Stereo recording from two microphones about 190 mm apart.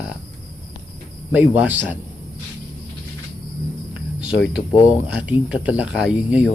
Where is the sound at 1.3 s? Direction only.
10° right (ahead or behind).